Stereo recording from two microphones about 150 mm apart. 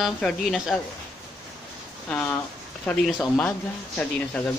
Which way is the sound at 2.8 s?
5° left (ahead or behind).